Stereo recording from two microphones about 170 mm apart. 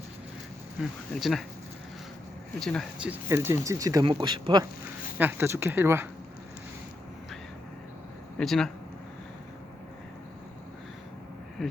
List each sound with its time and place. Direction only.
0.8 s speech: centre (ahead or behind)
2.6 s speech: 5° left (ahead or behind)
3.0 s speech: 10° right (ahead or behind)
5.1 s speech: 10° right (ahead or behind)
8.4 s speech: 5° left (ahead or behind)